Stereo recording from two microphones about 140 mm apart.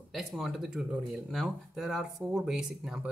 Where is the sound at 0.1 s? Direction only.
Centre (ahead or behind).